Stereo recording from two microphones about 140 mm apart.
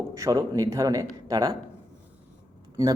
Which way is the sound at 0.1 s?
25° right (ahead or behind).